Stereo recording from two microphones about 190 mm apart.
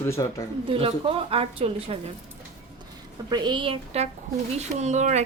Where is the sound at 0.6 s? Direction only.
30° right (ahead or behind).